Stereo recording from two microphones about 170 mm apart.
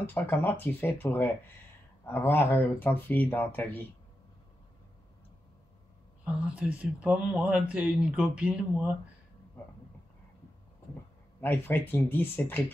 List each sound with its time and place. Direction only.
0.0 s speech: 10° left (ahead or behind)
6.2 s speech: 5° right (ahead or behind)
11.4 s speech: 10° left (ahead or behind)